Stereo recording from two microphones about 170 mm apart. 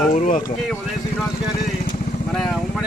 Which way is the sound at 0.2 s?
50° left (ahead or behind).